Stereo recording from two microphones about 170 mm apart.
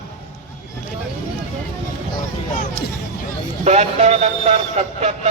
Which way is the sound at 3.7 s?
40° right (ahead or behind).